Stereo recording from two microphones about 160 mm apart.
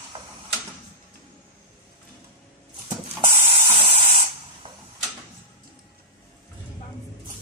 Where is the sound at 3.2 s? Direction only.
35° right (ahead or behind).